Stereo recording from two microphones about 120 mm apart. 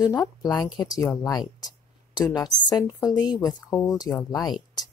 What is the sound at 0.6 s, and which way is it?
Speech, 35° left (ahead or behind).